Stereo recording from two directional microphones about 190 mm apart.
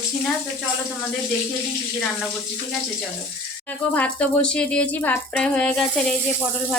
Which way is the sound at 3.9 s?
5° left (ahead or behind).